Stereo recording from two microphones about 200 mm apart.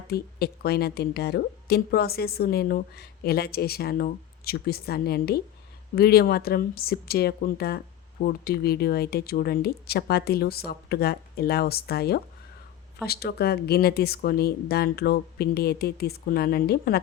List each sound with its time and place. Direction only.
0.1 s a woman's voice: 50° left (ahead or behind)